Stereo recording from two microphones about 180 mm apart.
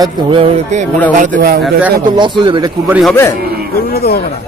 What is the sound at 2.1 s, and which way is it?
Speech, 25° right (ahead or behind).